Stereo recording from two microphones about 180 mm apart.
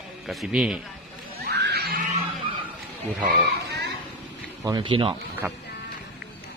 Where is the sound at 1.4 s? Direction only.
65° right (ahead or behind).